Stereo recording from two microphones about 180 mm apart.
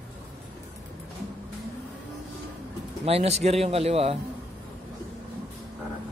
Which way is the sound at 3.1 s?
35° right (ahead or behind).